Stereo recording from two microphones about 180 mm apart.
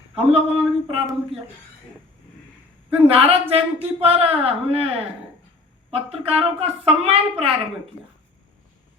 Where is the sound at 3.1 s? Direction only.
30° right (ahead or behind).